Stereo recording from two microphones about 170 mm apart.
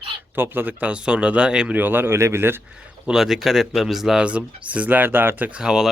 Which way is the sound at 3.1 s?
Centre (ahead or behind).